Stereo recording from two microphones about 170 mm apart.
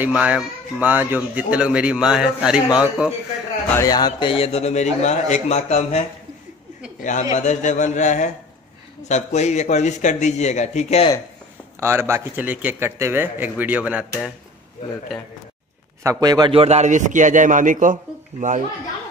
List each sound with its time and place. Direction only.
0.0 s a man's voice: 10° right (ahead or behind)
3.7 s a man's voice: 20° left (ahead or behind); by 11.1 s 40° left (ahead or behind)
11.8 s a man's voice: 15° right (ahead or behind)
16.0 s speech: 20° right (ahead or behind); by 18.6 s 50° right (ahead or behind)